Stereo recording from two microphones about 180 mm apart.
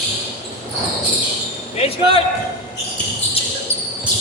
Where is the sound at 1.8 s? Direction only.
30° left (ahead or behind).